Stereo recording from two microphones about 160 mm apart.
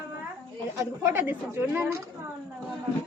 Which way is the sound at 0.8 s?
15° right (ahead or behind).